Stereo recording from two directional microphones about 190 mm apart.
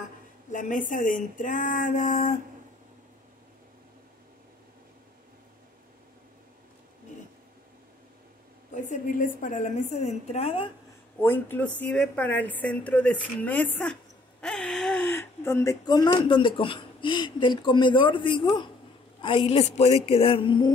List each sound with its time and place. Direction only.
0.5 s a sound: 40° left (ahead or behind)
8.7 s a woman's voice: 45° left (ahead or behind)
11.1 s a woman's voice: 10° left (ahead or behind)